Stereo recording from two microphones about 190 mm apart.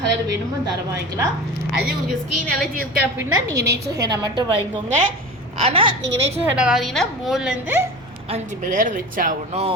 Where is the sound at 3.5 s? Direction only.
15° right (ahead or behind).